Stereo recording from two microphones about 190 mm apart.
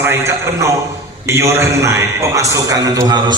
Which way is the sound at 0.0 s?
15° right (ahead or behind).